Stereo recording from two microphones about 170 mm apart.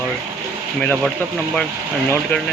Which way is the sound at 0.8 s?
5° left (ahead or behind).